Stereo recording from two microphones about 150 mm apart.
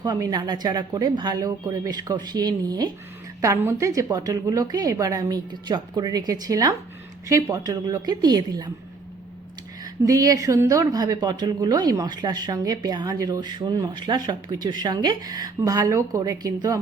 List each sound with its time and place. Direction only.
0.0 s speech: 25° right (ahead or behind)
9.8 s speech: 25° right (ahead or behind)